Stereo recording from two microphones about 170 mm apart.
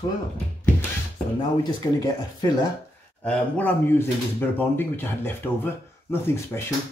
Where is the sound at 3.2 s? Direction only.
10° left (ahead or behind).